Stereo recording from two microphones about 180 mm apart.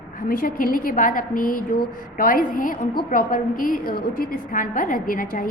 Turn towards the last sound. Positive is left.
turn(degrees=50)  # may be behind; listen again after turning